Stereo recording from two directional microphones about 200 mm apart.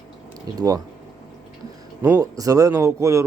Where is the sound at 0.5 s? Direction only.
20° right (ahead or behind).